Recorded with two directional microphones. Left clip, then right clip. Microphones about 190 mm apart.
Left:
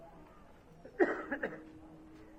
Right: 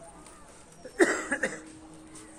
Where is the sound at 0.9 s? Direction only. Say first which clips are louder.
Right 7 dB; 55° right (ahead or behind).